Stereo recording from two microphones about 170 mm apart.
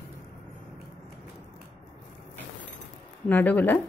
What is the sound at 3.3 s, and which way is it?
Speech, 10° left (ahead or behind).